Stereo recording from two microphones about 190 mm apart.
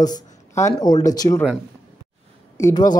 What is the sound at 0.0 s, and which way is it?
Speech, 20° left (ahead or behind).